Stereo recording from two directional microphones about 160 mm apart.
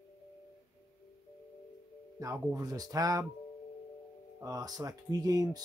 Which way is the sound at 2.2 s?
20° right (ahead or behind).